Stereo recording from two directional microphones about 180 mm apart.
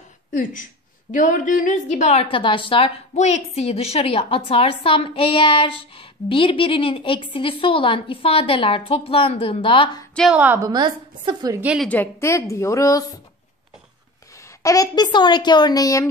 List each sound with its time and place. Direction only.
0.3 s a woman's voice: 45° left (ahead or behind); by 10.0 s 30° left (ahead or behind)
10.1 s a woman's voice: 5° right (ahead or behind)
10.7 s a woman's voice: 25° right (ahead or behind)
11.6 s a woman's voice: 5° right (ahead or behind)
11.9 s a woman's voice: 10° left (ahead or behind)
14.6 s speech: 20° left (ahead or behind)